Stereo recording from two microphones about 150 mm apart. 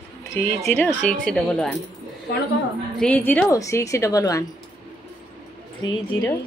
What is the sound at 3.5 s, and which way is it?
Speech, 20° left (ahead or behind).